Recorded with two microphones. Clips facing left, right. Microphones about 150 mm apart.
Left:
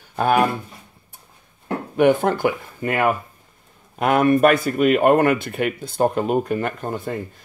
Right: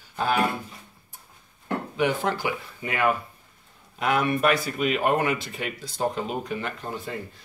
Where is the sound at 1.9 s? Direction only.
50° left (ahead or behind).